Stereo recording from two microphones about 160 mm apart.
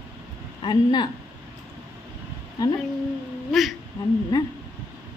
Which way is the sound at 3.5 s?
Centre (ahead or behind).